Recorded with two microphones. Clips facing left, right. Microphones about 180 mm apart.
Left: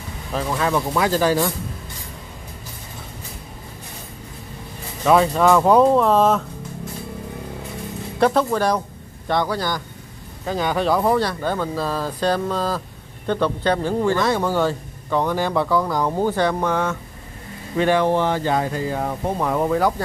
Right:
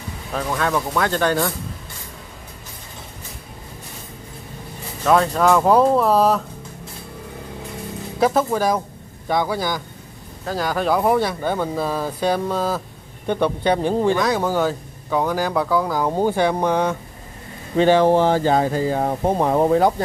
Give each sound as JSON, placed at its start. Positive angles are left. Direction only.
{"t": 0.3, "sound": "speech", "side_deg": 0}
{"t": 5.0, "sound": "speech", "side_deg": 5}
{"t": 8.2, "sound": "speech", "side_deg": -5}
{"t": 14.1, "sound": "speech", "side_deg": 0}
{"t": 17.7, "sound": "speech", "side_deg": -30}